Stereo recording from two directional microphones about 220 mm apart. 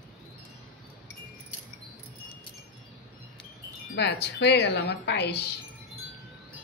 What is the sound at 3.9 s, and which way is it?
Speech, 50° left (ahead or behind).